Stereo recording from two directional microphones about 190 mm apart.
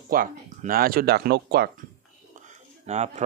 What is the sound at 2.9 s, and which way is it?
Speech, 35° right (ahead or behind).